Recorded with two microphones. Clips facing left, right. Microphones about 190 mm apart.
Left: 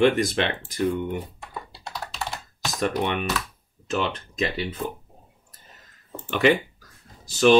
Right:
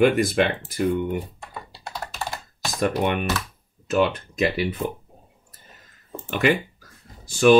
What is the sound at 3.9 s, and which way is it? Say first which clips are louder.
Speech: right 6 dB; 60° right (ahead or behind).